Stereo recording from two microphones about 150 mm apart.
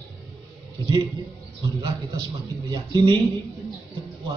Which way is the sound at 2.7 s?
30° right (ahead or behind).